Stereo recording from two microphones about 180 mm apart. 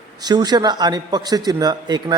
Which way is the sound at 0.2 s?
20° right (ahead or behind).